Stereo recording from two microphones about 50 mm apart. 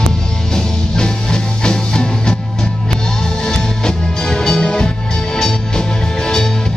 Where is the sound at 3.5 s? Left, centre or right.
Centre.